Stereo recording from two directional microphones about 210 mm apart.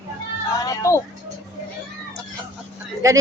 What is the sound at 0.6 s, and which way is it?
Music, 15° left (ahead or behind).